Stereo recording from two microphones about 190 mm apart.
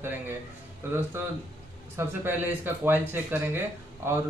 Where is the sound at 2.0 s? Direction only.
10° right (ahead or behind).